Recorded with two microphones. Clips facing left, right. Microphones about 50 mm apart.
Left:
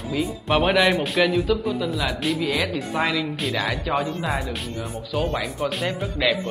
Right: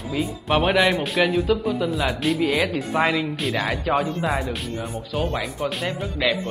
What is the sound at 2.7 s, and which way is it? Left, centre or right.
Speech, right.